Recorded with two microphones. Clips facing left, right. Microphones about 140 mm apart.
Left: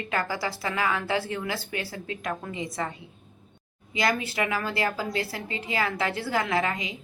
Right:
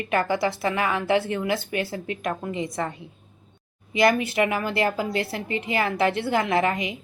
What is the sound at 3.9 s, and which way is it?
A woman's voice, 20° right (ahead or behind).